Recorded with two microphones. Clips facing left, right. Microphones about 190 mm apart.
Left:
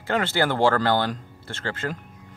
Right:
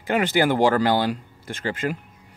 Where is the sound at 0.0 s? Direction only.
15° right (ahead or behind).